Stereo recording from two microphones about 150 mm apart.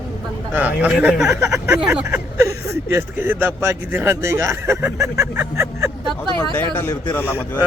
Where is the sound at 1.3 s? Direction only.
20° right (ahead or behind).